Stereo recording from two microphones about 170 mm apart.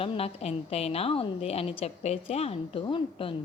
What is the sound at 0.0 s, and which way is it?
A woman's voice, 35° left (ahead or behind).